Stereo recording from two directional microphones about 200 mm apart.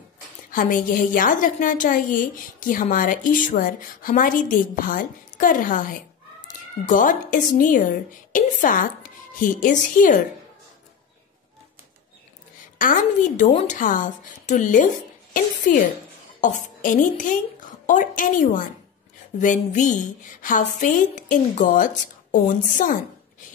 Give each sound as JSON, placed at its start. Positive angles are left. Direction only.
{"t": 0.5, "sound": "a woman's voice", "side_deg": 45}
{"t": 12.7, "sound": "a woman's voice", "side_deg": 40}